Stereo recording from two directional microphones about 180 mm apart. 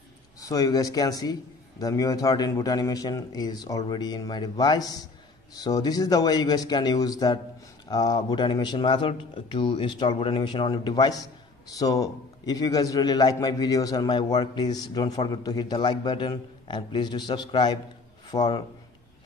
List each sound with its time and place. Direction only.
0.4 s a man's voice: 20° left (ahead or behind)